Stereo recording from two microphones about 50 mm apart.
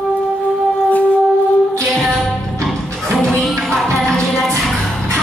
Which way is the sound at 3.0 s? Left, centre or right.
Centre.